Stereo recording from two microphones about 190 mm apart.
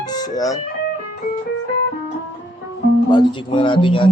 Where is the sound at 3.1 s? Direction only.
25° left (ahead or behind).